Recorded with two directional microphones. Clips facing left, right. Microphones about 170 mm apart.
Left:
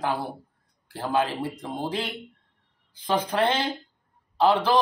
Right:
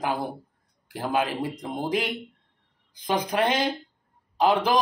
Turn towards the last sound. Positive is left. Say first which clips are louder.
# left 1 dB
turn(degrees=-15)  # may be behind; listen again after turning